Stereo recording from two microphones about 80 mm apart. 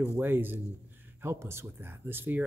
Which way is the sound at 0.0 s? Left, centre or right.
Right.